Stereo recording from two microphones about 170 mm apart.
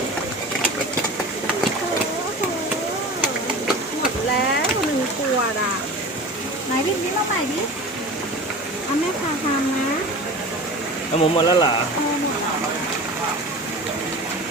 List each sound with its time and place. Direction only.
11.2 s speech: 25° left (ahead or behind)